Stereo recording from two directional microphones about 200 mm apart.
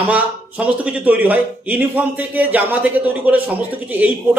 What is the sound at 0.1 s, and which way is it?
A man's voice, 5° right (ahead or behind).